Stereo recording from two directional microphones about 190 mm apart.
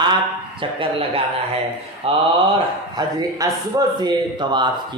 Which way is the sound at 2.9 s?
20° right (ahead or behind).